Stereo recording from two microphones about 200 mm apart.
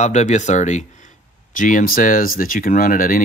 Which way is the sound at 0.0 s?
35° left (ahead or behind).